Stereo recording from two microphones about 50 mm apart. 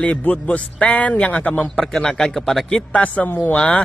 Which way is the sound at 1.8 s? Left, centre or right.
Centre.